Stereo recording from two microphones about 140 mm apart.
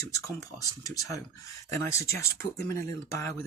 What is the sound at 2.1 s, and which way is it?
Speech, 20° left (ahead or behind).